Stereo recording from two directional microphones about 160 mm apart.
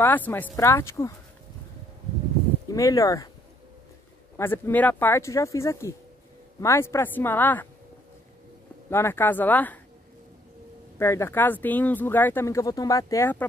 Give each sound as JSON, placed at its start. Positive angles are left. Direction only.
{"t": 0.0, "sound": "speech", "side_deg": 10}
{"t": 2.7, "sound": "speech", "side_deg": 20}
{"t": 4.4, "sound": "speech", "side_deg": 15}
{"t": 8.9, "sound": "speech", "side_deg": 15}
{"t": 11.0, "sound": "speech", "side_deg": 15}